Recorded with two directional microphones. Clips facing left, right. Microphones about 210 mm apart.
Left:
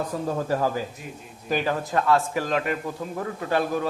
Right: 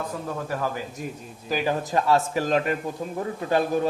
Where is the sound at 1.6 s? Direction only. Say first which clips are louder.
Right 2 dB; 20° right (ahead or behind).